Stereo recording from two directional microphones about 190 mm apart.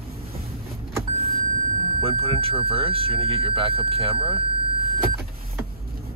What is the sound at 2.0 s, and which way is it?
Speech, 30° right (ahead or behind).